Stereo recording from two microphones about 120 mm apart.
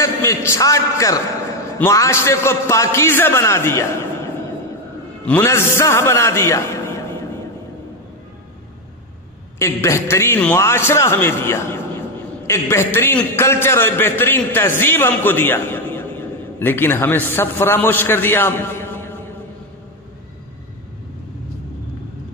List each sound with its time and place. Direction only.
0.0 s a man's voice: 25° left (ahead or behind)
5.2 s a man's voice: 15° left (ahead or behind)
9.6 s a man's voice: 25° left (ahead or behind)